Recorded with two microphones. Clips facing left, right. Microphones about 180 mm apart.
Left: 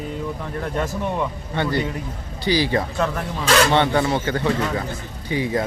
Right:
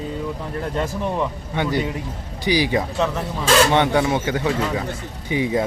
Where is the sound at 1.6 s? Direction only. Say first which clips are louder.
Right 1 dB; 15° right (ahead or behind).